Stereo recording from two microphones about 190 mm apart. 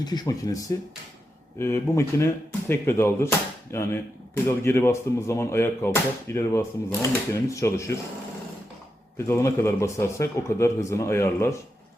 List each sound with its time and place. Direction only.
0.0 s speech: 20° left (ahead or behind)
9.1 s speech: 15° left (ahead or behind)